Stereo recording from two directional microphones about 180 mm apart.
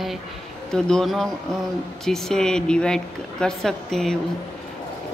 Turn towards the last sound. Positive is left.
turn(degrees=0)  # may be behind; listen again after turning